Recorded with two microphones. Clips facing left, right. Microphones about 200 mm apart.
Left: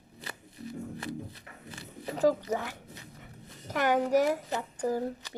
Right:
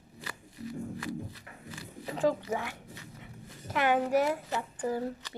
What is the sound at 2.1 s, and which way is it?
Speech, 40° left (ahead or behind).